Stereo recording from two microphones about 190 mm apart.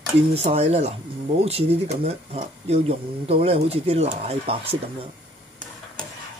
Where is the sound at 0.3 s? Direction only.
30° right (ahead or behind).